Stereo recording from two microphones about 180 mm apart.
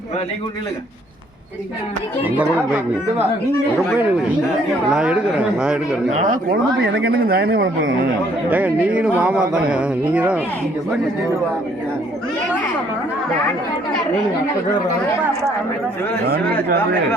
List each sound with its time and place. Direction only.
4.9 s speech: 5° right (ahead or behind)
6.1 s speech: 45° right (ahead or behind)
6.7 s speech: 65° right (ahead or behind)
8.4 s speech: 10° right (ahead or behind)
16.2 s speech: 60° right (ahead or behind)